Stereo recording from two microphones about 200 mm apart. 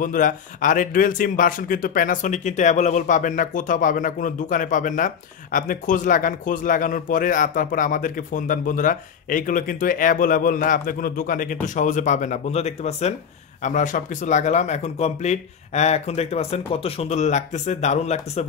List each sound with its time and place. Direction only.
0.0 s a man's voice: 40° left (ahead or behind)